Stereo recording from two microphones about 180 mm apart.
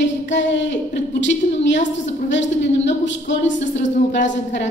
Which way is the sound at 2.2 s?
90° left.